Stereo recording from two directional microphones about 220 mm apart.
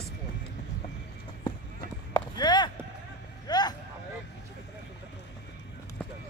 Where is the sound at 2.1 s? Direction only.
20° left (ahead or behind).